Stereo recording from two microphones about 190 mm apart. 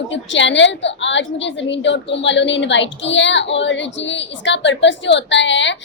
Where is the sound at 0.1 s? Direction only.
75° left (ahead or behind).